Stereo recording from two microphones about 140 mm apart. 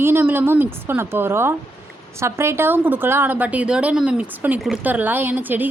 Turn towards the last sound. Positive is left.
turn(degrees=-15)  # may be behind; listen again after turning